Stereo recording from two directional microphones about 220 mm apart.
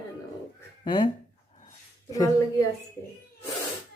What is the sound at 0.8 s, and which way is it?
Speech, 20° left (ahead or behind).